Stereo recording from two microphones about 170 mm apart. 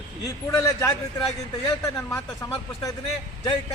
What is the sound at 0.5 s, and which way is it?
A man's voice, 20° left (ahead or behind).